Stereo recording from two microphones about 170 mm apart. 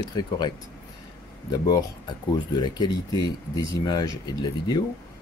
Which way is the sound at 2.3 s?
25° left (ahead or behind).